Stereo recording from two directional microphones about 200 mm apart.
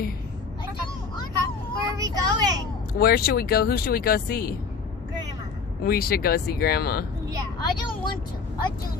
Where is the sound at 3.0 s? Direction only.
50° left (ahead or behind).